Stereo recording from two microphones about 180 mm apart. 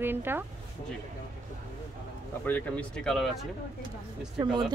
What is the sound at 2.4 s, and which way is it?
Speech, 10° left (ahead or behind).